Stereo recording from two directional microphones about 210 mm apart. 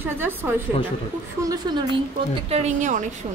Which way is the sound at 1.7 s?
20° right (ahead or behind).